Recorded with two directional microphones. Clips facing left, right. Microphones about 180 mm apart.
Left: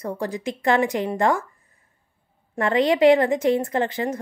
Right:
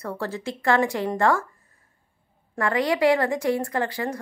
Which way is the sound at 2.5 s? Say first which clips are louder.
Left 4 dB; 20° left (ahead or behind).